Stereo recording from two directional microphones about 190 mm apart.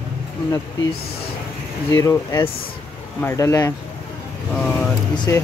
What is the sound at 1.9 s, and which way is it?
Speech, 15° left (ahead or behind).